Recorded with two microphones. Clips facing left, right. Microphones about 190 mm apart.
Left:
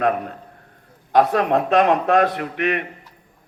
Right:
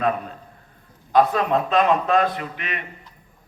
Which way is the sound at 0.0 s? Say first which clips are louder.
Left 3 dB; 60° left (ahead or behind).